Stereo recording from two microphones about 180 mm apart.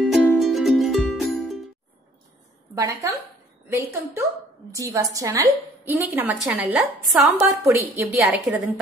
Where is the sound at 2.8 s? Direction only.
15° right (ahead or behind).